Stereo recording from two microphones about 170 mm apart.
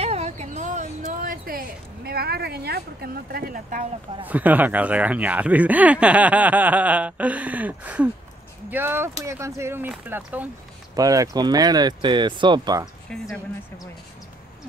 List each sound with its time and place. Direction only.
0.0 s a sound: 40° right (ahead or behind); by 1.6 s 55° right (ahead or behind)
2.0 s speech: 65° right (ahead or behind)
4.3 s speech: 10° right (ahead or behind)
11.0 s speech: 20° right (ahead or behind)
13.1 s a woman's voice: 5° left (ahead or behind)